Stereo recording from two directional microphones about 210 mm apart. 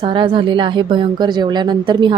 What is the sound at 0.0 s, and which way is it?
Speech, 25° right (ahead or behind).